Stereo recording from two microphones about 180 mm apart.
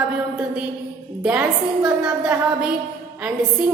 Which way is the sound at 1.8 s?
5° right (ahead or behind).